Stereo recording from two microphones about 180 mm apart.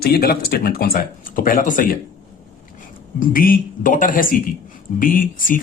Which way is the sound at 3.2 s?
50° left (ahead or behind).